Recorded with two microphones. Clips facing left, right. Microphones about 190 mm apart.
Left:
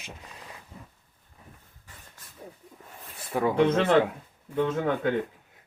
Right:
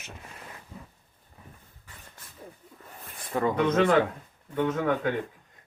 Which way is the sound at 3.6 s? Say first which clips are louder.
Left 1 dB; 30° left (ahead or behind).